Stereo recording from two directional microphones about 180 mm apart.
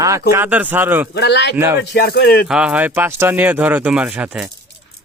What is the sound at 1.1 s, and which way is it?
Speech, 70° left (ahead or behind).